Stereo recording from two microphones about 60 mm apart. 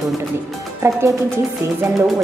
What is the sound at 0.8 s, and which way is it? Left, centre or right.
Speech, right.